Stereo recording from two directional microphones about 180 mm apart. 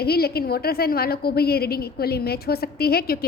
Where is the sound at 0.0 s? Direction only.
60° left (ahead or behind).